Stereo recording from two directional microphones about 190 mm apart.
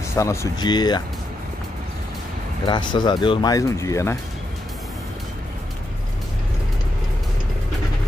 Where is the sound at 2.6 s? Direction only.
25° left (ahead or behind).